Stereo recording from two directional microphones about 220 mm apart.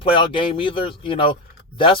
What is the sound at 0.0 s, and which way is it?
Speech, 25° left (ahead or behind).